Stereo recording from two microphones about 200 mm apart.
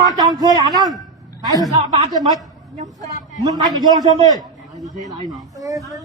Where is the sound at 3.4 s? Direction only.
20° right (ahead or behind).